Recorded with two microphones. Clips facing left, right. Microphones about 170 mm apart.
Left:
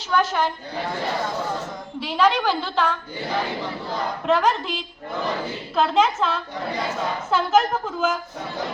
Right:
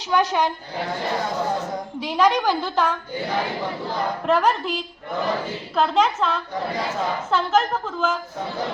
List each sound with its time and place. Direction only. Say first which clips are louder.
0.1 s a woman's voice: right 1 dB; 20° right (ahead or behind)
2.0 s a woman's voice: right 1 dB; 15° right (ahead or behind)
4.3 s a woman's voice: even; 5° right (ahead or behind)
5.7 s a woman's voice: even; centre (ahead or behind)